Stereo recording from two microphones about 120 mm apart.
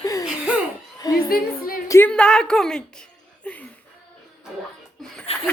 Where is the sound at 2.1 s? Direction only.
5° left (ahead or behind).